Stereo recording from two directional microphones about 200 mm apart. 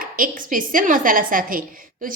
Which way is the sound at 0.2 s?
45° right (ahead or behind).